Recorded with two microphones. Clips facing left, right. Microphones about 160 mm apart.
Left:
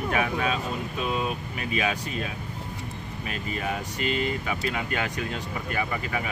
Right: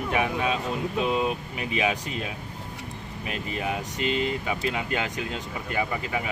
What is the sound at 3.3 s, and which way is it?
Speech, 15° right (ahead or behind).